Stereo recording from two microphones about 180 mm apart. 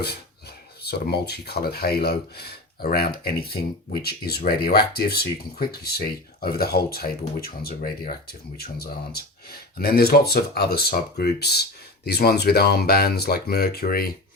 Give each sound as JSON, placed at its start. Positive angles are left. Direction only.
{"t": 0.9, "sound": "speech", "side_deg": 65}